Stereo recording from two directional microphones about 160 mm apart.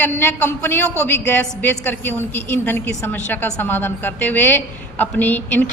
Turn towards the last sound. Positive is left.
turn(degrees=10)  # may be behind; listen again after turning